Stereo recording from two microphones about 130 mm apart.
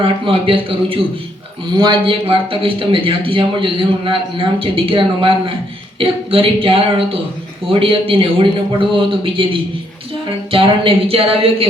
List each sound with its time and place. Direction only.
0.0 s a man's voice: 45° right (ahead or behind)